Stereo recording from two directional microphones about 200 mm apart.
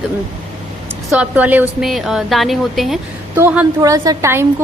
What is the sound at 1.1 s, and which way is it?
A woman's voice, 5° right (ahead or behind).